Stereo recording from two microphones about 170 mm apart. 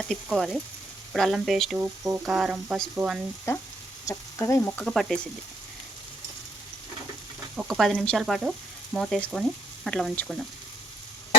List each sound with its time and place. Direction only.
0.1 s speech: centre (ahead or behind)
1.7 s speech: 10° right (ahead or behind)
3.5 s speech: 15° left (ahead or behind)
4.0 s sizzle: 15° left (ahead or behind)
4.9 s speech: centre (ahead or behind)
7.5 s frying: 5° right (ahead or behind)
9.8 s speech: centre (ahead or behind)